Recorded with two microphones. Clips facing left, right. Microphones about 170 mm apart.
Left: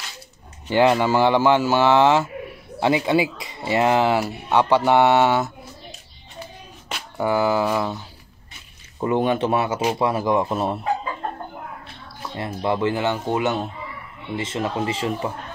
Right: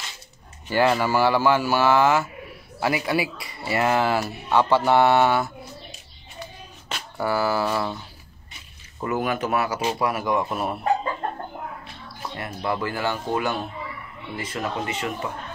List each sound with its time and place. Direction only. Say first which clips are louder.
0.7 s speech: left 3 dB; 20° left (ahead or behind)
6.9 s speech: left 3 dB; 15° left (ahead or behind)
9.0 s speech: left 5 dB; 25° left (ahead or behind)
12.4 s speech: left 5 dB; 25° left (ahead or behind)